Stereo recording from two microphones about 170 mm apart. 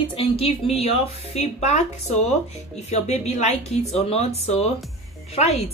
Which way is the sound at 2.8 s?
40° left (ahead or behind).